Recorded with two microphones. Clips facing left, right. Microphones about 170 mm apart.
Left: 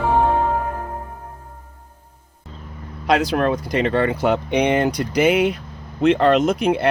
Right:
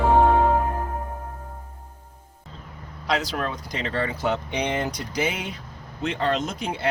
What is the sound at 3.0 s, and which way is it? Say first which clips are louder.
Speech: left 8 dB; 55° left (ahead or behind).